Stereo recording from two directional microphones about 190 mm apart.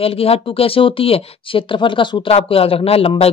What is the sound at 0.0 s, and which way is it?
Speech, 30° left (ahead or behind).